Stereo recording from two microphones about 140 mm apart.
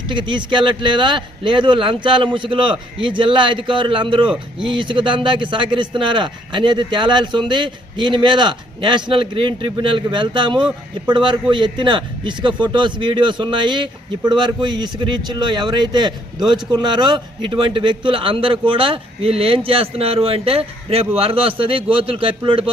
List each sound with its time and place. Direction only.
0.1 s a man's voice: 35° right (ahead or behind)